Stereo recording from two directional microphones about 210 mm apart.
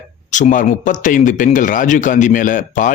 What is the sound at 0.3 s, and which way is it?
Speech, 35° left (ahead or behind).